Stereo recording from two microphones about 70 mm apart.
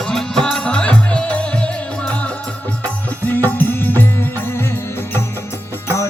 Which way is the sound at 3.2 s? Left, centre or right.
Left.